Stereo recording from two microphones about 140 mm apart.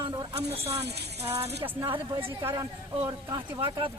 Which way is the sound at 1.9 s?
35° right (ahead or behind).